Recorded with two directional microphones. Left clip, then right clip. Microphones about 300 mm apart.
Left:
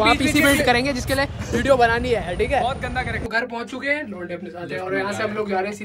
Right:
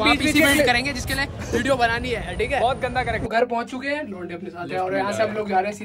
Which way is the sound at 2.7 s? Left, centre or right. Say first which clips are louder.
Right 2 dB; centre.